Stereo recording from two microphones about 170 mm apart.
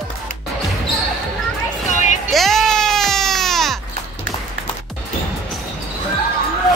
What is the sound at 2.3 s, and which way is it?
Sheep, centre (ahead or behind).